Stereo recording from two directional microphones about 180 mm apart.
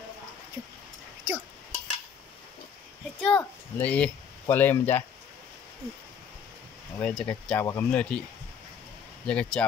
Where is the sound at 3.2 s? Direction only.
5° left (ahead or behind).